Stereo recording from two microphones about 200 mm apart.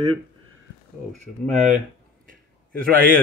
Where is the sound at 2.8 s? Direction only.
45° right (ahead or behind).